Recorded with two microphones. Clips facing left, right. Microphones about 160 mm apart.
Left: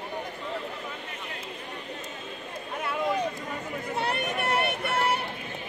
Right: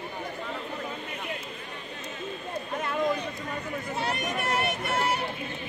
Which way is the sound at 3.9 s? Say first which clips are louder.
Left 2 dB; 60° left (ahead or behind).